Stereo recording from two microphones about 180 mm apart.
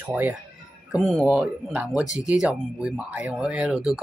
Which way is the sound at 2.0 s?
40° left (ahead or behind).